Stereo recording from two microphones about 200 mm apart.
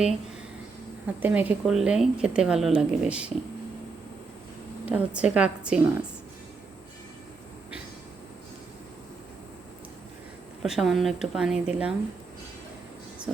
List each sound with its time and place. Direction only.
1.0 s a woman's voice: 10° right (ahead or behind)
4.9 s a woman's voice: 5° right (ahead or behind)
10.6 s a woman's voice: centre (ahead or behind)
13.3 s speech: centre (ahead or behind)